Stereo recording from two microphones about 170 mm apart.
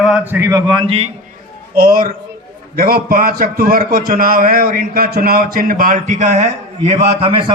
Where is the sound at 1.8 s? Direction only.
60° right (ahead or behind).